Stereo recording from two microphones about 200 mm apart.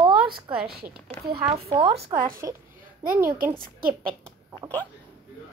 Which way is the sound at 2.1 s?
45° right (ahead or behind).